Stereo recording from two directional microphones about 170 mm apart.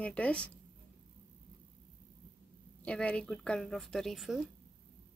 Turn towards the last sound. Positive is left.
turn(degrees=0)  # may be behind; listen again after turning